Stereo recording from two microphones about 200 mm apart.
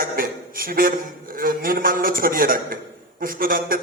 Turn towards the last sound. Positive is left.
turn(degrees=-45)  # may be behind; listen again after turning